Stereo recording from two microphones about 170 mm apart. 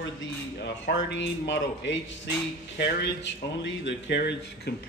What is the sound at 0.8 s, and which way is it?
Speech, 90° left.